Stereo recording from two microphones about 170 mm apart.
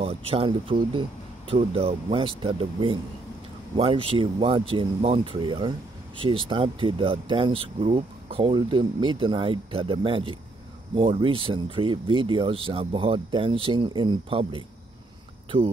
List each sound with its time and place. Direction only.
0.0 s speech: 35° right (ahead or behind)